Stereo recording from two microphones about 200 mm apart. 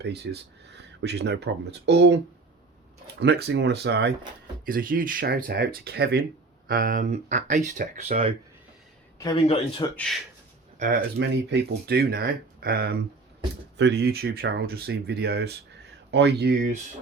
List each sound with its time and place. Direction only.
0.0 s speech: 55° right (ahead or behind)
4.6 s speech: 45° right (ahead or behind)
9.1 s a man's voice: 20° left (ahead or behind)
10.8 s speech: 45° right (ahead or behind)